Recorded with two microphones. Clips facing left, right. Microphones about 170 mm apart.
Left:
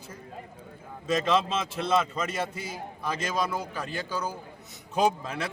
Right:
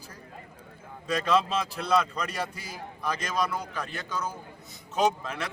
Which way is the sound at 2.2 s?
Centre (ahead or behind).